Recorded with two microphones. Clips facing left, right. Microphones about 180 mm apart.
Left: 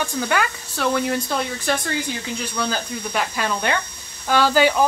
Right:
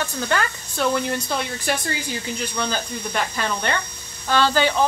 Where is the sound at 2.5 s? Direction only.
5° left (ahead or behind).